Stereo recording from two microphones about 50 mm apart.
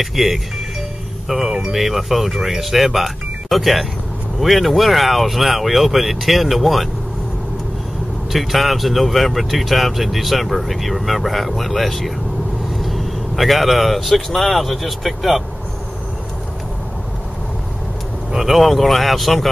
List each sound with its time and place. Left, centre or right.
0.0 s speech: centre
8.3 s speech: centre
18.3 s speech: centre